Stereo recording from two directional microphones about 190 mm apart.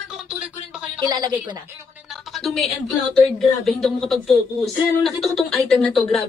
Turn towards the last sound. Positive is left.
turn(degrees=0)  # may be behind; listen again after turning